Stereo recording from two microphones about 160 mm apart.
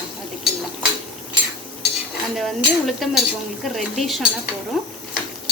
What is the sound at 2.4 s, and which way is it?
Speech, centre (ahead or behind).